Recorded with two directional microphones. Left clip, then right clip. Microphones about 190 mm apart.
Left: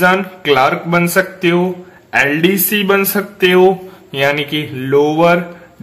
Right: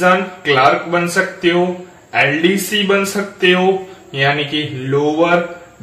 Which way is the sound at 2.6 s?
40° left (ahead or behind).